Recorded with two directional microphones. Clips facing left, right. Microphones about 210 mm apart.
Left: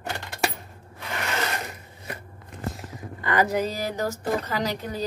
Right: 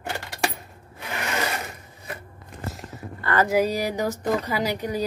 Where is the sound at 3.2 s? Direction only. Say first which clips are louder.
Even; 15° left (ahead or behind).